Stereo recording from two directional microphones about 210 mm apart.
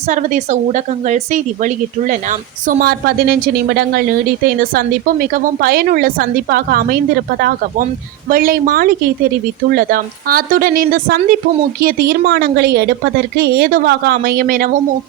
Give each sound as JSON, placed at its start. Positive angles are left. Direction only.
{"t": 0.1, "sound": "a woman's voice", "side_deg": -35}
{"t": 8.3, "sound": "speech", "side_deg": -45}